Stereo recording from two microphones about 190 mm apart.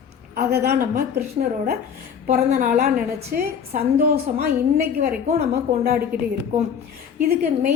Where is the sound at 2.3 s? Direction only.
35° right (ahead or behind); by 5.4 s 55° right (ahead or behind).